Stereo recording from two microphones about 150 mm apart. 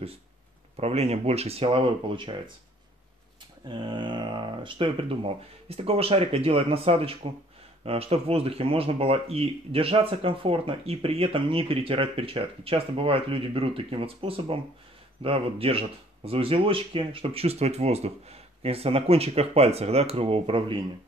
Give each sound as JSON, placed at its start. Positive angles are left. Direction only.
{"t": 0.7, "sound": "speech", "side_deg": -45}
{"t": 3.6, "sound": "speech", "side_deg": -30}